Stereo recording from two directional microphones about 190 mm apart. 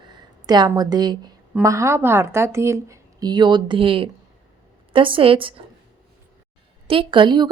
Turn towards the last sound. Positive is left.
turn(degrees=-25)  # may be behind; listen again after turning